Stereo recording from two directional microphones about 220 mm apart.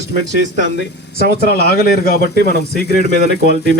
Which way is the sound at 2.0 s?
40° left (ahead or behind).